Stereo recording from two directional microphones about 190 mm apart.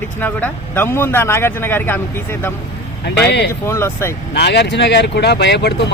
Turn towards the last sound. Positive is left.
turn(degrees=65)  # may be behind; listen again after turning